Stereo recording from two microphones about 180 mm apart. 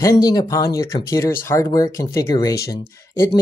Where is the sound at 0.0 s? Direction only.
20° left (ahead or behind).